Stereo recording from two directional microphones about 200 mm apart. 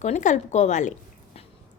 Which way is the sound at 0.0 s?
35° left (ahead or behind).